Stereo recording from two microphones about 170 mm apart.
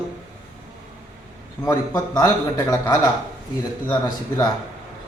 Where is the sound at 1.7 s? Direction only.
20° left (ahead or behind).